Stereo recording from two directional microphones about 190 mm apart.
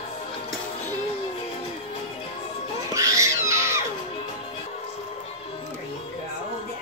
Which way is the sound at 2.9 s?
15° right (ahead or behind).